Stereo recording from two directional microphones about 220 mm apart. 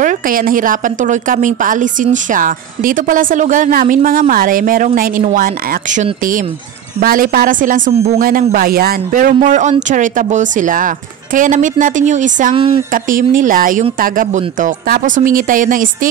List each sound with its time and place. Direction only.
0.0 s a woman's voice: 35° right (ahead or behind)
12.5 s speech: 25° right (ahead or behind)
12.9 s a woman's voice: 40° right (ahead or behind)